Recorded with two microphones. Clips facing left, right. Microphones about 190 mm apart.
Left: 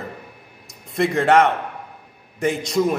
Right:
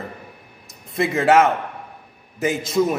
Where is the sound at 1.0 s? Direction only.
Centre (ahead or behind).